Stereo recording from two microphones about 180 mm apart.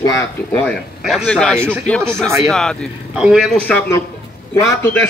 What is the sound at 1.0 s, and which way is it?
Speech, centre (ahead or behind).